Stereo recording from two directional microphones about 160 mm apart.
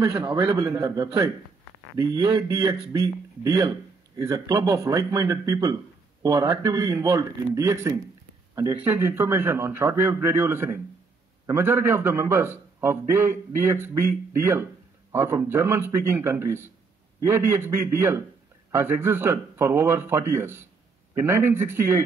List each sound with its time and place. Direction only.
0.0 s speech: 25° right (ahead or behind)
2.4 s a man's voice: 20° right (ahead or behind)